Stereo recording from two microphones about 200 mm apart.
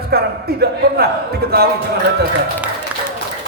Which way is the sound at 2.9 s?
10° right (ahead or behind).